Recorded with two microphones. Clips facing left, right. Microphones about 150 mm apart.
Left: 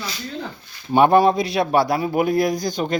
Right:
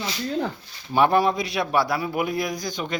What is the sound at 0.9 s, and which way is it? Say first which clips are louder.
Speech: left 5 dB; 25° left (ahead or behind).